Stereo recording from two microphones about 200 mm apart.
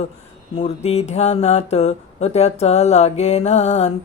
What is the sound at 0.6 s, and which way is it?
Speech, 35° left (ahead or behind).